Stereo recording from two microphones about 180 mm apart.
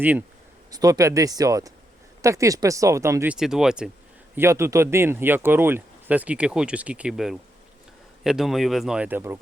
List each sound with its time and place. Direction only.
0.0 s speech: 10° right (ahead or behind)
3.3 s speech: 5° right (ahead or behind)
4.4 s speech: 15° right (ahead or behind)